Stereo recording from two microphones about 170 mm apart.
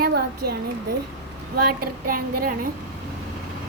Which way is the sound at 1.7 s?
60° right (ahead or behind).